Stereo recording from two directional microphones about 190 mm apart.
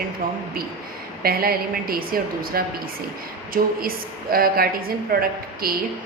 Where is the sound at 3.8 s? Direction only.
50° right (ahead or behind).